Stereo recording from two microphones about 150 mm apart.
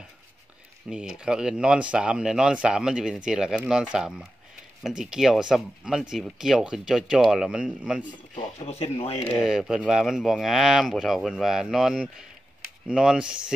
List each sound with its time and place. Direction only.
0.8 s speech: 5° right (ahead or behind)
8.5 s speech: 45° left (ahead or behind)
9.4 s speech: centre (ahead or behind)